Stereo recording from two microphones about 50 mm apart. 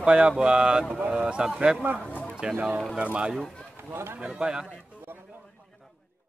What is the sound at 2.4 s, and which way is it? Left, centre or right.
Speech, centre.